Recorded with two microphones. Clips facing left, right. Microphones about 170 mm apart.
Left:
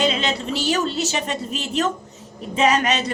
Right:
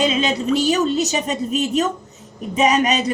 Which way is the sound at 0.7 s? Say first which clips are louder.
Right 4 dB; 15° right (ahead or behind).